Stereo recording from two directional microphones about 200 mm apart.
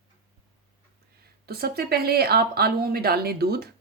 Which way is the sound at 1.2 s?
50° right (ahead or behind).